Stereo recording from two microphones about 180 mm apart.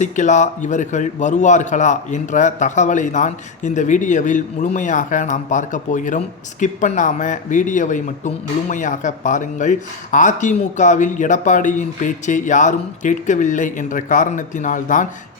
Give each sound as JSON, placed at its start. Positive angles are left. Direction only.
{"t": 0.0, "sound": "a man's voice", "side_deg": 40}